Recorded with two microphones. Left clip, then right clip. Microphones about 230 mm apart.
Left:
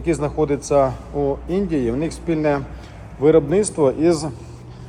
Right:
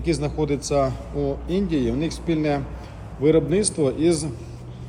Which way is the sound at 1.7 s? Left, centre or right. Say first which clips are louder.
Left 2 dB; centre.